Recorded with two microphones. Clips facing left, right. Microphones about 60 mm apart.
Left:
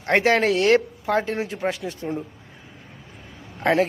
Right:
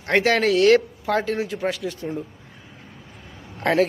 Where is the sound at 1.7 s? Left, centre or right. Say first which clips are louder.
Right 2 dB; left.